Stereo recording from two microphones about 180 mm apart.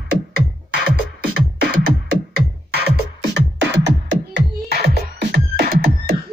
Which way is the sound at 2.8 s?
65° right (ahead or behind).